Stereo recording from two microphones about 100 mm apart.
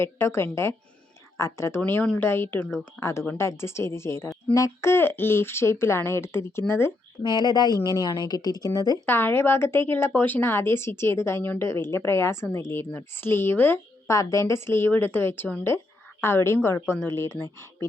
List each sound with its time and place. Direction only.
0.0 s a woman's voice: 25° left (ahead or behind)
1.8 s a woman's voice: 15° left (ahead or behind)
7.2 s speech: 45° left (ahead or behind)
9.0 s a woman's voice: 20° left (ahead or behind)
14.2 s a woman's voice: 35° left (ahead or behind)